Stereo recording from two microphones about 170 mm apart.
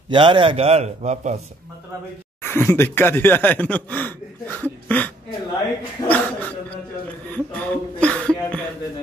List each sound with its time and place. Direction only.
0.1 s a man's voice: 30° right (ahead or behind)
2.4 s speech: 15° left (ahead or behind)
4.8 s throat clearing: 10° left (ahead or behind)
6.0 s speech: 10° left (ahead or behind)
7.3 s speech: 10° left (ahead or behind)